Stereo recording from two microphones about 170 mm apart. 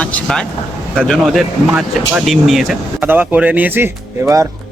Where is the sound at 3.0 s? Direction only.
10° right (ahead or behind).